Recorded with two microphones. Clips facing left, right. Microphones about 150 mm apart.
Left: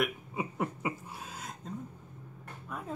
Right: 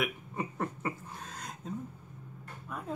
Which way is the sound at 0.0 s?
10° left (ahead or behind).